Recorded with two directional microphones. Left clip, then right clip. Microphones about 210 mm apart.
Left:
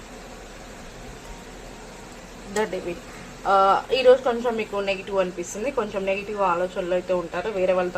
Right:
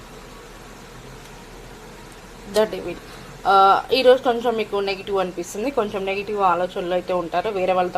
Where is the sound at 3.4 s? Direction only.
30° right (ahead or behind).